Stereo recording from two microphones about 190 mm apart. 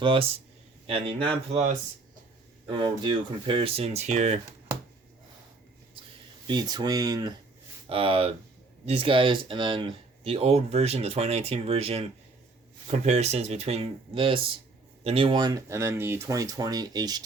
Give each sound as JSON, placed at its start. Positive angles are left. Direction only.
{"t": 0.0, "sound": "speech", "side_deg": -30}
{"t": 6.5, "sound": "speech", "side_deg": -20}